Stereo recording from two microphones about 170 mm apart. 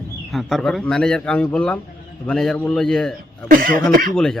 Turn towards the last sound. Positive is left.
turn(degrees=0)  # may be behind; listen again after turning